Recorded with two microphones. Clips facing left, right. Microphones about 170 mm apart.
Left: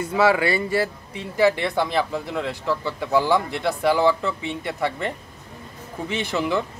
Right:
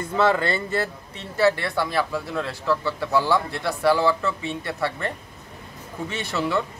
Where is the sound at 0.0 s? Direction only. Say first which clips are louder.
Left 2 dB; 10° left (ahead or behind).